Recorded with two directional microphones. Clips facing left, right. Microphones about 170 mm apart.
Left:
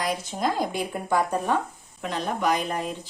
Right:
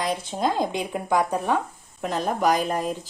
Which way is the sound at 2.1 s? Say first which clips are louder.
Right 3 dB; 40° right (ahead or behind).